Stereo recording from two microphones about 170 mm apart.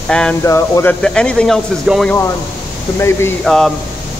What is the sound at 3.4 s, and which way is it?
Speech, 5° left (ahead or behind).